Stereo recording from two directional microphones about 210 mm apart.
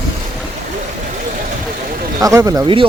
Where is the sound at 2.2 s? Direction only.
15° right (ahead or behind).